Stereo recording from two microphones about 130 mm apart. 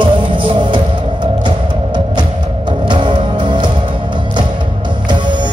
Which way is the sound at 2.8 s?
35° right (ahead or behind).